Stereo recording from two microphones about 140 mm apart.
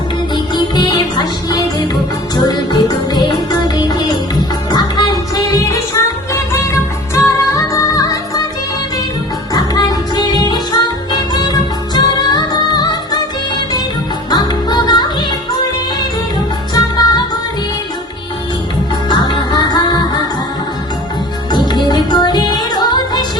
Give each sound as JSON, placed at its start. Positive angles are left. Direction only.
{"t": 0.5, "sound": "music", "side_deg": 30}
{"t": 7.1, "sound": "music", "side_deg": 20}
{"t": 9.5, "sound": "music", "side_deg": 30}
{"t": 14.3, "sound": "music", "side_deg": 30}
{"t": 16.7, "sound": "music", "side_deg": 30}
{"t": 19.0, "sound": "music", "side_deg": 30}
{"t": 21.7, "sound": "music", "side_deg": 30}